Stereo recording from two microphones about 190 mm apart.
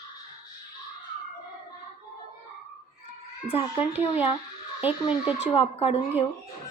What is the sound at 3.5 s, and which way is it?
Speech, 30° left (ahead or behind).